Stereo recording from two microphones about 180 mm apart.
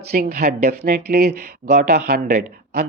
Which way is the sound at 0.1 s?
45° right (ahead or behind).